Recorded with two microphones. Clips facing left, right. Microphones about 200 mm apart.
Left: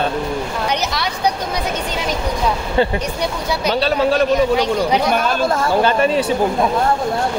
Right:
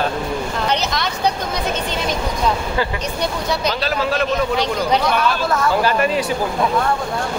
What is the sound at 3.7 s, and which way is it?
Speech, 30° left (ahead or behind).